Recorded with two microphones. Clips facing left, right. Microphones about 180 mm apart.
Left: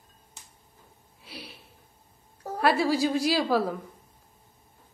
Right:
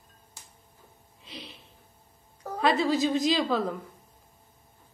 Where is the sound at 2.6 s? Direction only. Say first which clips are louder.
Left 1 dB; 10° left (ahead or behind).